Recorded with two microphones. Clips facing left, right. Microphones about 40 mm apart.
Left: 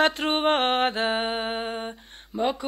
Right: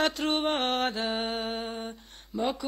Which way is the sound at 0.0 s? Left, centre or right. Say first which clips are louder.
Left 5 dB; left.